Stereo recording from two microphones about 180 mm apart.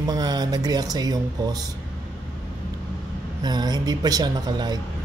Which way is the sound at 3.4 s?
25° right (ahead or behind).